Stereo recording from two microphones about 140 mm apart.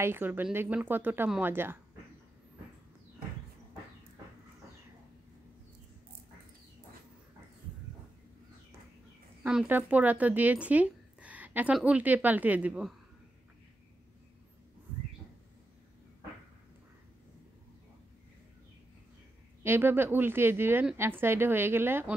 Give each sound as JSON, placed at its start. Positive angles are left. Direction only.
{"t": 0.0, "sound": "a woman's voice", "side_deg": -15}
{"t": 9.4, "sound": "speech", "side_deg": -10}
{"t": 19.6, "sound": "a woman's voice", "side_deg": -15}